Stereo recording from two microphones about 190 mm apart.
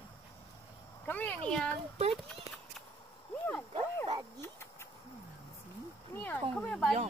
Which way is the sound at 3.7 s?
20° right (ahead or behind).